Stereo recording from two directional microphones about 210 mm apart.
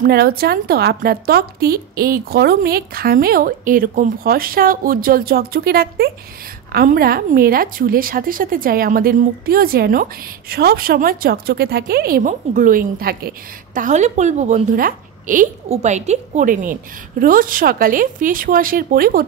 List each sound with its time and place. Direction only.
0.0 s a woman's voice: 45° right (ahead or behind)
13.7 s a woman's voice: 35° right (ahead or behind)